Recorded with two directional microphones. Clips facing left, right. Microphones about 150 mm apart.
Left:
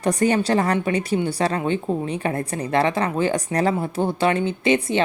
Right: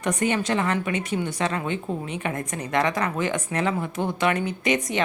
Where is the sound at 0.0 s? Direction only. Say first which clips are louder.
Left 5 dB; 35° left (ahead or behind).